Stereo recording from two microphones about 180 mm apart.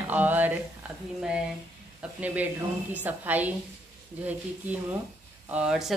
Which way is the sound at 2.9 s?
10° right (ahead or behind).